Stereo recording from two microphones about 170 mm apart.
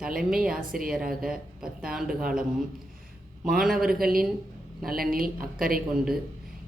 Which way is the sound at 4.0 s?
60° right (ahead or behind).